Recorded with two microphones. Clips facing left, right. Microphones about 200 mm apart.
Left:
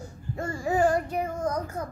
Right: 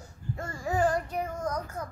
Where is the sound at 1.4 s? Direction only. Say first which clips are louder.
Left 4 dB; 30° left (ahead or behind).